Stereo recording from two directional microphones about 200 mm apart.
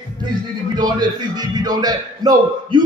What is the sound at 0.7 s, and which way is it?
A man's voice, 20° right (ahead or behind).